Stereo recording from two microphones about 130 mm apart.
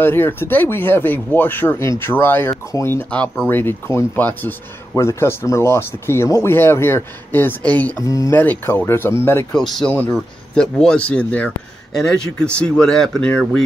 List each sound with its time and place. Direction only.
0.0 s speech: 15° left (ahead or behind)
8.0 s speech: 25° left (ahead or behind)
8.4 s speech: 15° left (ahead or behind)
9.5 s speech: centre (ahead or behind)